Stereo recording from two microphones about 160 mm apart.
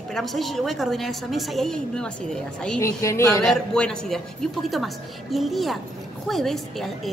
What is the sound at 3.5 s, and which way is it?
A woman's voice, 5° left (ahead or behind).